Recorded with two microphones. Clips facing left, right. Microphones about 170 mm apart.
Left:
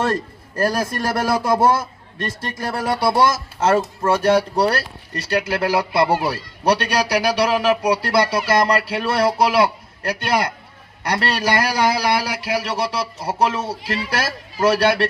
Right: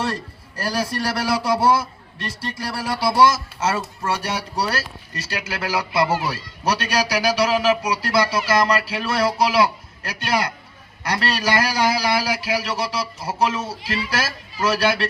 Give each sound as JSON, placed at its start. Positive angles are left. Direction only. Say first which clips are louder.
{"t": 0.0, "sound": "a man's voice", "louder": "left 5 dB", "side_deg": 50}